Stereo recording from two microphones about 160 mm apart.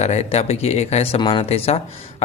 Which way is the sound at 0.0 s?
40° left (ahead or behind).